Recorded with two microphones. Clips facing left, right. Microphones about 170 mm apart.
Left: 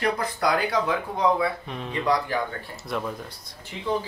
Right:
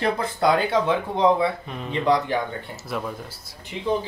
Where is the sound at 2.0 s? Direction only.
20° right (ahead or behind).